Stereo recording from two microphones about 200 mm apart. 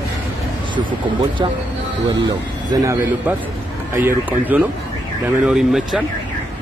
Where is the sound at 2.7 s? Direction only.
15° right (ahead or behind).